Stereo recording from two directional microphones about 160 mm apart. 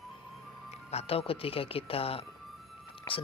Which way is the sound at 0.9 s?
35° left (ahead or behind).